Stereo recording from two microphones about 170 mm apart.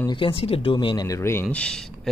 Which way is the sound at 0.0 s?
30° left (ahead or behind).